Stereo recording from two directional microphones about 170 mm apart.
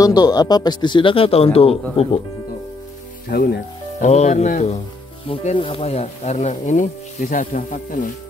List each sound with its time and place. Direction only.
0.0 s a man's voice: 25° left (ahead or behind)
3.3 s speech: 65° left (ahead or behind)
4.0 s speech: 45° left (ahead or behind)